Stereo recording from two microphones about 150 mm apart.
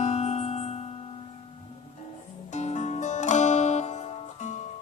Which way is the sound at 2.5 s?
50° left (ahead or behind).